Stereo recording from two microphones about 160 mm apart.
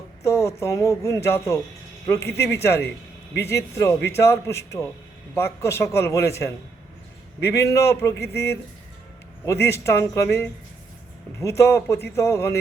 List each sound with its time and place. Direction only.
0.2 s a man's voice: 20° left (ahead or behind)
9.5 s a man's voice: 15° left (ahead or behind)